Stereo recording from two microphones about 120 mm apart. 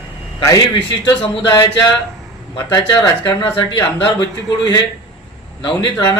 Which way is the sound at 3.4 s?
45° left (ahead or behind).